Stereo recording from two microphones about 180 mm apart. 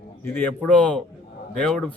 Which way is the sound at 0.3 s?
10° left (ahead or behind).